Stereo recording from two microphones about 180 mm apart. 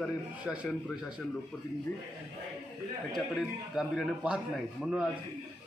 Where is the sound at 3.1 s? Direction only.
Centre (ahead or behind).